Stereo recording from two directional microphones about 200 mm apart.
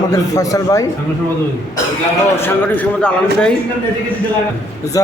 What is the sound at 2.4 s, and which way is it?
A man's voice, 10° left (ahead or behind).